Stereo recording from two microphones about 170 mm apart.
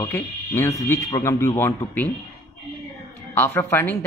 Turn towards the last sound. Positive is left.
turn(degrees=10)  # may be behind; listen again after turning